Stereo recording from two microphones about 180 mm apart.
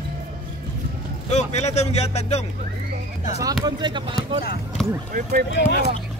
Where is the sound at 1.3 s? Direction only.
40° left (ahead or behind).